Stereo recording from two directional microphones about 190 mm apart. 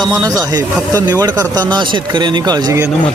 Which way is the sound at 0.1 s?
20° right (ahead or behind).